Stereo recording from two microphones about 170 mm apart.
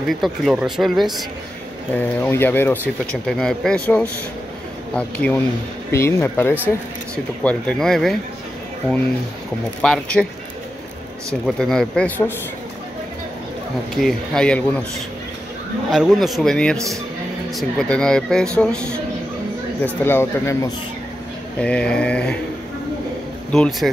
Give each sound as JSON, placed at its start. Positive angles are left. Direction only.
{"t": 0.2, "sound": "speech", "side_deg": 0}
{"t": 2.0, "sound": "speech", "side_deg": 15}
{"t": 9.8, "sound": "speech", "side_deg": 5}
{"t": 11.4, "sound": "speech", "side_deg": 5}
{"t": 13.9, "sound": "speech", "side_deg": 0}
{"t": 15.9, "sound": "speech", "side_deg": 0}
{"t": 20.1, "sound": "speech", "side_deg": 15}
{"t": 23.5, "sound": "speech", "side_deg": 5}